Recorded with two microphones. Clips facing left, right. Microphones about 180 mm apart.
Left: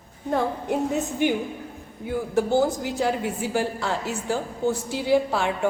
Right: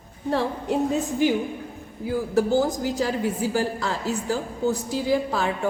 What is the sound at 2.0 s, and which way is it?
A woman's voice, 35° right (ahead or behind).